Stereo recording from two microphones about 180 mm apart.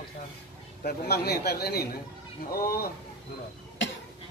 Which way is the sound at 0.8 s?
60° left (ahead or behind).